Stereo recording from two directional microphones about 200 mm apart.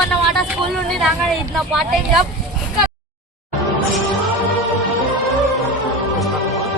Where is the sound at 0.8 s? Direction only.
Centre (ahead or behind).